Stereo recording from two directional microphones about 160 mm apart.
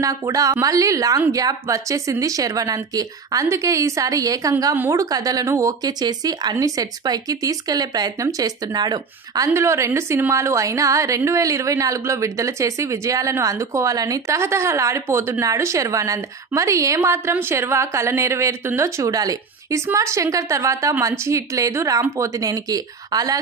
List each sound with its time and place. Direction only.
0.0 s speech: 20° right (ahead or behind)